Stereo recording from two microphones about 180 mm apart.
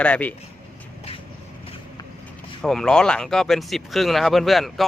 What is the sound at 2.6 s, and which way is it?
Speech, centre (ahead or behind).